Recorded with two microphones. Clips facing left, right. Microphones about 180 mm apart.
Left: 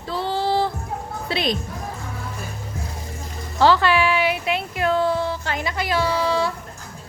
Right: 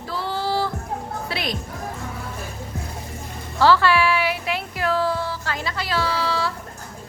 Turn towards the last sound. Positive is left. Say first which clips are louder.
# left 3 dB
turn(degrees=20)  # may be behind; listen again after turning